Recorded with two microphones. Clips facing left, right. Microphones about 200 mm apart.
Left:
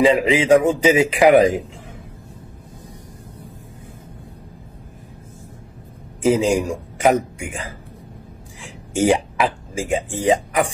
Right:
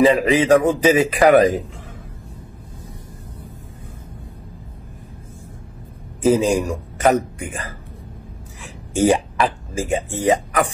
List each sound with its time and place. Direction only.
0.0 s a man's voice: 10° left (ahead or behind)
6.2 s a man's voice: 10° left (ahead or behind)
8.9 s speech: 10° left (ahead or behind)